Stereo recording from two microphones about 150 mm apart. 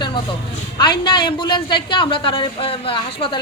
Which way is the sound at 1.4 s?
30° left (ahead or behind).